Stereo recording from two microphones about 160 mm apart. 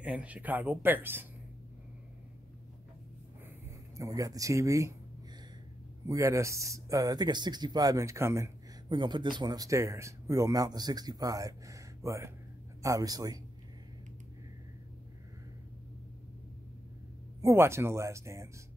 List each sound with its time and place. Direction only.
0.0 s speech: 10° right (ahead or behind)
3.6 s speech: 20° right (ahead or behind)
6.0 s speech: 20° right (ahead or behind)
17.4 s speech: 20° right (ahead or behind)